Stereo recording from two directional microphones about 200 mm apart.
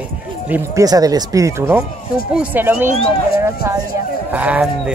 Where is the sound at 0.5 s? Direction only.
15° right (ahead or behind).